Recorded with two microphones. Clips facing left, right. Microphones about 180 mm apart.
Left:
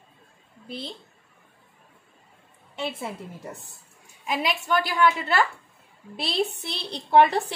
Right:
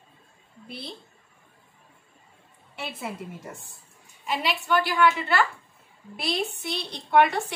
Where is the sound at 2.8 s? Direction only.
25° left (ahead or behind).